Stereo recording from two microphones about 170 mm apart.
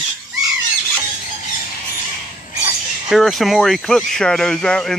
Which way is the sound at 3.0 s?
Centre (ahead or behind).